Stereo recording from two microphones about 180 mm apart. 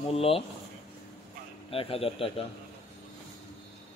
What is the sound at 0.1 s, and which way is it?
Speech, 35° left (ahead or behind).